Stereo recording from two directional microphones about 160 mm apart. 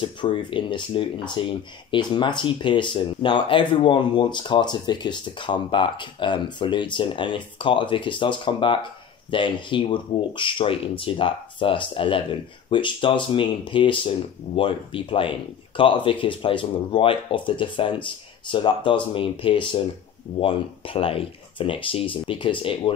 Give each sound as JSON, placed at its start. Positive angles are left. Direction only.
{"t": 0.0, "sound": "speech", "side_deg": 30}